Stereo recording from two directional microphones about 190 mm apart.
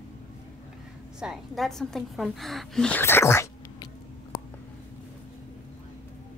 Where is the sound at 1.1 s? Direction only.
5° right (ahead or behind); by 3.7 s 15° left (ahead or behind).